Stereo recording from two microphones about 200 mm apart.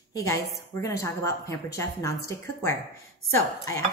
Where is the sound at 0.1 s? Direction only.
15° left (ahead or behind).